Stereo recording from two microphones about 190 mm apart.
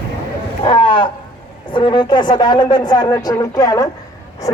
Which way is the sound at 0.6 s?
25° left (ahead or behind).